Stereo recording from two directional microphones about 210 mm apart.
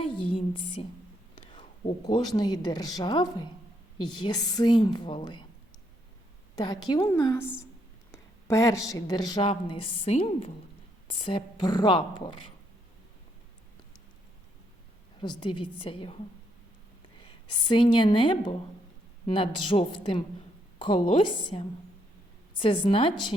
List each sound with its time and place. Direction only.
0.0 s a sound: 25° left (ahead or behind)
1.4 s a woman's voice: 25° left (ahead or behind)
6.6 s a woman's voice: 20° left (ahead or behind)
15.2 s a woman's voice: 20° left (ahead or behind)
17.2 s a woman's voice: 20° left (ahead or behind)